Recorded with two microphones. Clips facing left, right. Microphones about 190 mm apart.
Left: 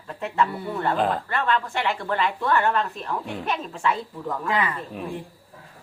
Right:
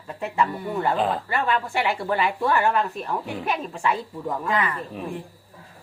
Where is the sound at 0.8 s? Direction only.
5° right (ahead or behind).